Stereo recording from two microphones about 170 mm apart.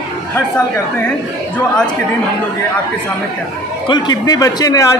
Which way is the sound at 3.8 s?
25° left (ahead or behind).